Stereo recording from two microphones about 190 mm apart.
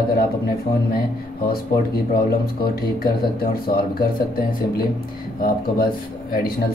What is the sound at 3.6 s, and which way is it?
Speech, 50° left (ahead or behind).